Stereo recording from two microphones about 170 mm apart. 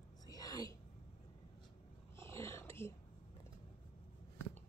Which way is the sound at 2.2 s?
15° left (ahead or behind).